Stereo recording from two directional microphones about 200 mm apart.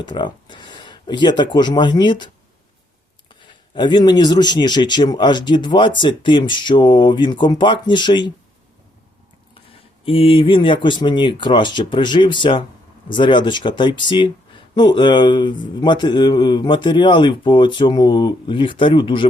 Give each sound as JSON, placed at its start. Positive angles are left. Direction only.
{"t": 0.0, "sound": "a man's voice", "side_deg": 25}
{"t": 10.1, "sound": "a man's voice", "side_deg": 25}